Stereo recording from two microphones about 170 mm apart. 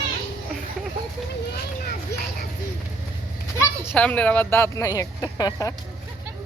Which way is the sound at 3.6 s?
10° left (ahead or behind).